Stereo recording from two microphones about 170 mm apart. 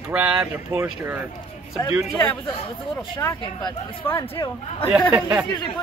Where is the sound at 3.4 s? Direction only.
30° left (ahead or behind).